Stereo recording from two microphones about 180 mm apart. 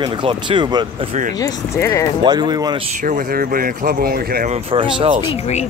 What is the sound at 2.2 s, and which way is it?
Speech, 25° right (ahead or behind).